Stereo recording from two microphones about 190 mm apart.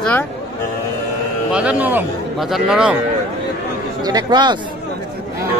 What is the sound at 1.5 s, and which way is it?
A man's voice, 10° right (ahead or behind).